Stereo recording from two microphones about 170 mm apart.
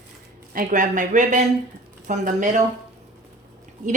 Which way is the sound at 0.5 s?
50° right (ahead or behind).